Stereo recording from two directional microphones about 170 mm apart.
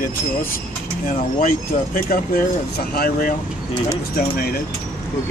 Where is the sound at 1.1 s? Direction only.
55° left (ahead or behind).